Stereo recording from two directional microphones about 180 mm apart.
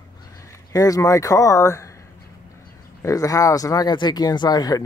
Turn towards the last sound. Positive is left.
turn(degrees=20)  # may be behind; listen again after turning